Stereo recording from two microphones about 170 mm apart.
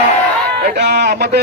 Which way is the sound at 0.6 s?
75° right (ahead or behind).